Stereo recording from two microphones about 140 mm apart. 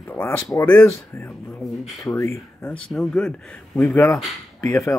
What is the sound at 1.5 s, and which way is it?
Speech, centre (ahead or behind).